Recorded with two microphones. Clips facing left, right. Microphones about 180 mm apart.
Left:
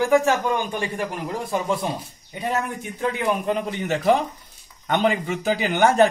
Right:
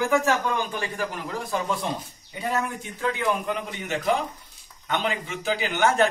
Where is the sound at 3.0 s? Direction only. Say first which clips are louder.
Left 2 dB; 15° left (ahead or behind).